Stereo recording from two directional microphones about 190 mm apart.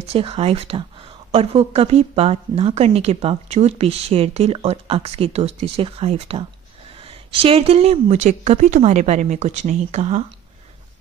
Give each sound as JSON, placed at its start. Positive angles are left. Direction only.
{"t": 0.1, "sound": "speech", "side_deg": -30}